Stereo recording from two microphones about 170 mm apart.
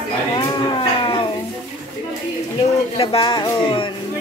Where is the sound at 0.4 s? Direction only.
30° left (ahead or behind).